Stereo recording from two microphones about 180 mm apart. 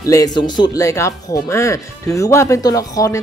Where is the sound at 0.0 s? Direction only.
20° left (ahead or behind).